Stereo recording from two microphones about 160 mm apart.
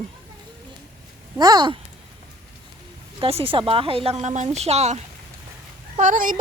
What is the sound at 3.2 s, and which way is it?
Speech, 35° right (ahead or behind).